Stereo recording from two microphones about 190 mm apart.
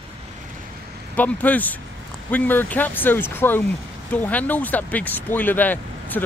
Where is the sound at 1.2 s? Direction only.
10° left (ahead or behind).